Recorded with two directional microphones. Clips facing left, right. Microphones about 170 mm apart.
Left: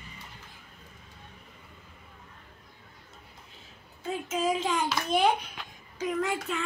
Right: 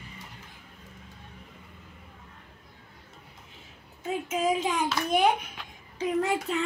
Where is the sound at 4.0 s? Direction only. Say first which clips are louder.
Right 2 dB; 20° right (ahead or behind).